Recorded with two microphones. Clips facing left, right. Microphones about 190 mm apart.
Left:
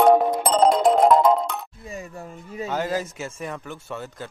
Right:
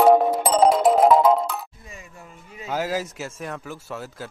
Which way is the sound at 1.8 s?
40° left (ahead or behind).